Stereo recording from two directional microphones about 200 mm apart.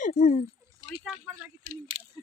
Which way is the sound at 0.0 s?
40° left (ahead or behind).